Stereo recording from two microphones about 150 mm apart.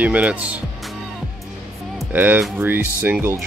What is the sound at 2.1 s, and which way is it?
Speech, 10° right (ahead or behind).